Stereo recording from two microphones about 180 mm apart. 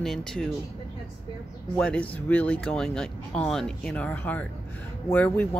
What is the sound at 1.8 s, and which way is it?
Speech, 5° left (ahead or behind).